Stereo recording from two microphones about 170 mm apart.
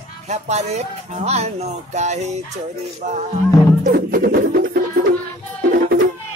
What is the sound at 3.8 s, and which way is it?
Music, 60° right (ahead or behind).